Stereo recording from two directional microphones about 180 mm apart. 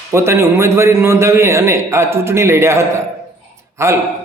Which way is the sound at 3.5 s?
15° right (ahead or behind).